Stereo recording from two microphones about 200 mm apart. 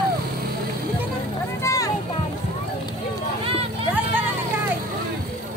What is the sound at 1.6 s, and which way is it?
Music, 15° left (ahead or behind).